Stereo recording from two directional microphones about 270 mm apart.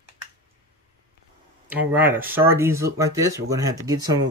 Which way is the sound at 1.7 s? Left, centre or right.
Centre.